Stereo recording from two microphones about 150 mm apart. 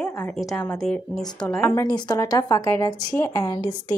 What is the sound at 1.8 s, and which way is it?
A woman's voice, 25° left (ahead or behind).